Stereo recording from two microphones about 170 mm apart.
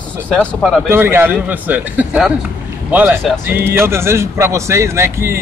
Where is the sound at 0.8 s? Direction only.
15° right (ahead or behind).